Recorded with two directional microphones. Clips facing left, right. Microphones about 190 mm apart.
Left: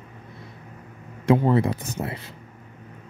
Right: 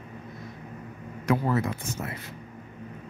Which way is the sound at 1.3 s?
30° left (ahead or behind).